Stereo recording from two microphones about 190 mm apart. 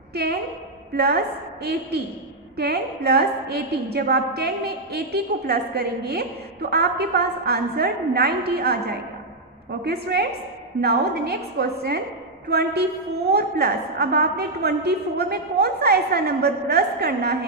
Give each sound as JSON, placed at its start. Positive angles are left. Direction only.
{"t": 0.1, "sound": "a woman's voice", "side_deg": -55}